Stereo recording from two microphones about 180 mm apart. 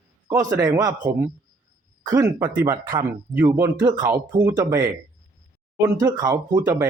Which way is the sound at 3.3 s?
10° right (ahead or behind).